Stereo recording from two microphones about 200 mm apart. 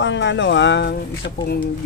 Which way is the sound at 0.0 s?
65° left (ahead or behind).